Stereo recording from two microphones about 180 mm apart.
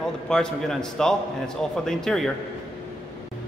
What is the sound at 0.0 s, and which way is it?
A man's voice, 5° left (ahead or behind).